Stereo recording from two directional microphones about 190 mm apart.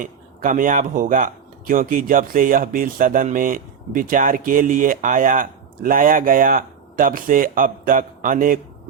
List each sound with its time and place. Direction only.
0.0 s speech: 45° right (ahead or behind)